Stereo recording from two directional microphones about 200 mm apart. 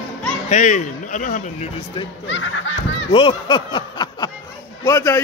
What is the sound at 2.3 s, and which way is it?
Speech, 65° left (ahead or behind).